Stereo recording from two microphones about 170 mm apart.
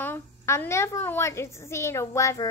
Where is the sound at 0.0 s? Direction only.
10° left (ahead or behind).